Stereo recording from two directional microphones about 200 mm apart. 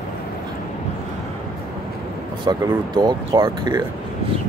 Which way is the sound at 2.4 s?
20° right (ahead or behind).